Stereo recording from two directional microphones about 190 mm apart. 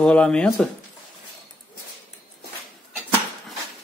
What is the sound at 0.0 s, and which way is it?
Speech, 5° left (ahead or behind).